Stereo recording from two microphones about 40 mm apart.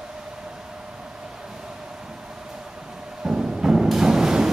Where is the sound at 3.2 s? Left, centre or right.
Centre.